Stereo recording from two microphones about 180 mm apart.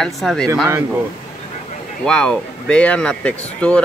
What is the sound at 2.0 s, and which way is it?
Speech, 5° left (ahead or behind).